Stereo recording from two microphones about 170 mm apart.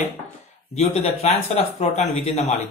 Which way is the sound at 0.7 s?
40° left (ahead or behind).